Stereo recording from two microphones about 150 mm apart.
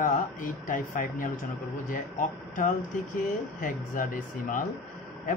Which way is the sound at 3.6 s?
65° left (ahead or behind).